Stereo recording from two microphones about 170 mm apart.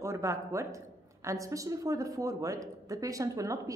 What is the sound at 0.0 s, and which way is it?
A woman's voice, 20° right (ahead or behind).